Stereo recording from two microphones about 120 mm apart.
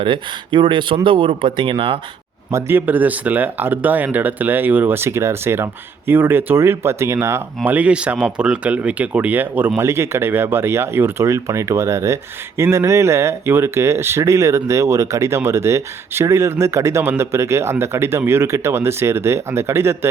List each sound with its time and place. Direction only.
0.0 s speech: 45° right (ahead or behind)
2.5 s speech: 20° right (ahead or behind)